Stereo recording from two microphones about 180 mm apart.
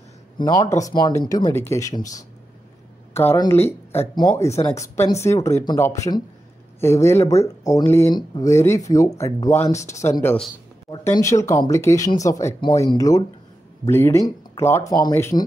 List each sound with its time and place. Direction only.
0.4 s speech: 20° left (ahead or behind)